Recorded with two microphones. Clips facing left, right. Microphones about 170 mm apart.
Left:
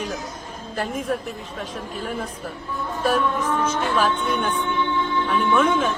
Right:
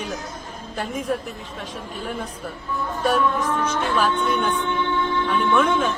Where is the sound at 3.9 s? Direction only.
Centre (ahead or behind).